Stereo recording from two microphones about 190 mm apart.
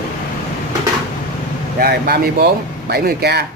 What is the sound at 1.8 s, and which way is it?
Speech, 55° right (ahead or behind).